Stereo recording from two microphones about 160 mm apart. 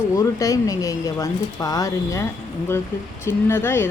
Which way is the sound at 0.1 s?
20° left (ahead or behind).